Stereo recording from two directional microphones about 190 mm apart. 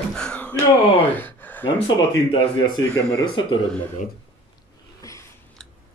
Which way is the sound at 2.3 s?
25° left (ahead or behind).